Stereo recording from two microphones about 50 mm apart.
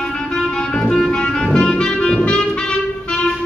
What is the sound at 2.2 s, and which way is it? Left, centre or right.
Music, centre.